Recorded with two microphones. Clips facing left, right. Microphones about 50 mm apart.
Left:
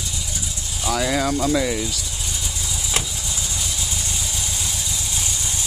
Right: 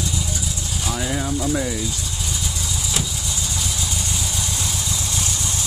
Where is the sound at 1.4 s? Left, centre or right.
Left.